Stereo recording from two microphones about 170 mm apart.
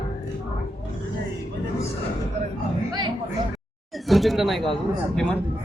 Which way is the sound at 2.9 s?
25° right (ahead or behind).